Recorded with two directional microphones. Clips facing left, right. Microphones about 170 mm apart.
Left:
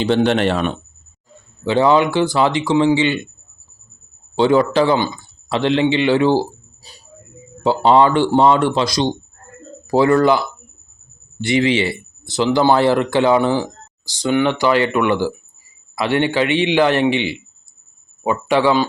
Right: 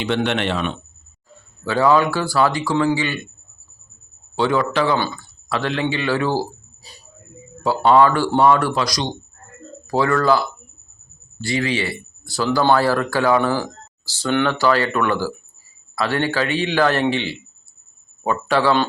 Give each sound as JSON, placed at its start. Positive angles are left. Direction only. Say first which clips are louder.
{"t": 0.0, "sound": "speech", "louder": "left 5 dB", "side_deg": 35}
{"t": 1.6, "sound": "speech", "louder": "left 2 dB", "side_deg": 25}
{"t": 4.4, "sound": "speech", "louder": "left 5 dB", "side_deg": 30}
{"t": 4.9, "sound": "speech", "louder": "left 3 dB", "side_deg": 15}
{"t": 7.6, "sound": "speech", "louder": "left 1 dB", "side_deg": 25}